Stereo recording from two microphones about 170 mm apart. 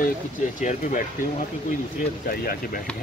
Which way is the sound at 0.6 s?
50° left (ahead or behind).